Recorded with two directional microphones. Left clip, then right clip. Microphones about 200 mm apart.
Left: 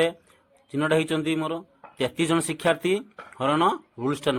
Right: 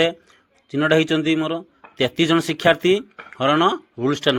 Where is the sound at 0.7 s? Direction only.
25° right (ahead or behind).